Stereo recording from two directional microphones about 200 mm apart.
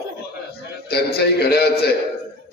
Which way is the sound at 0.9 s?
55° left (ahead or behind).